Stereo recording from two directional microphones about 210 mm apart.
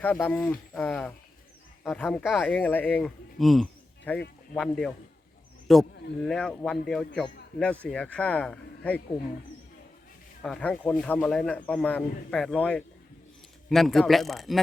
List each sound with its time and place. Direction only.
0.0 s a man's voice: 5° left (ahead or behind)
10.4 s speech: 5° left (ahead or behind)